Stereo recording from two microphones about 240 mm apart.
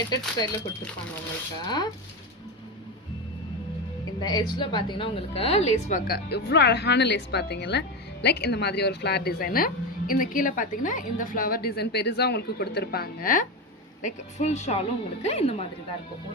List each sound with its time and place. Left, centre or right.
1.6 s speech: centre
4.2 s a woman's voice: centre